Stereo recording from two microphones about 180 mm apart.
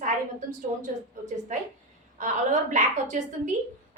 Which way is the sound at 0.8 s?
45° right (ahead or behind).